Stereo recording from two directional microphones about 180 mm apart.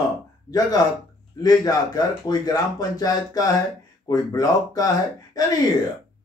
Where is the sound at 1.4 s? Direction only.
20° left (ahead or behind).